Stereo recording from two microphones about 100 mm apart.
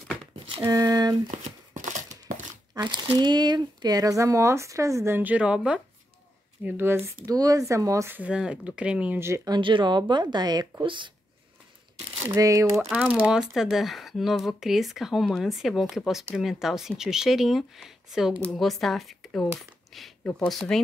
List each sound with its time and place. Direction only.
0.6 s a sound: 35° right (ahead or behind)
2.7 s speech: 50° right (ahead or behind); by 5.8 s 10° right (ahead or behind)
6.6 s speech: 25° right (ahead or behind)
7.2 s speech: 35° right (ahead or behind)
8.1 s speech: 10° right (ahead or behind)
9.2 s speech: 30° right (ahead or behind)
9.5 s speech: 55° right (ahead or behind)
12.4 s speech: 35° right (ahead or behind)
12.7 s speech: 5° right (ahead or behind)